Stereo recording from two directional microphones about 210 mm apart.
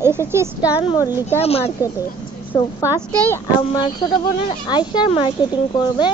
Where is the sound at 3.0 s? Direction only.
10° left (ahead or behind).